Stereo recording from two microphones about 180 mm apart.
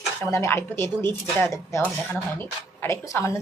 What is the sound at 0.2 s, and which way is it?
Speech, 15° left (ahead or behind).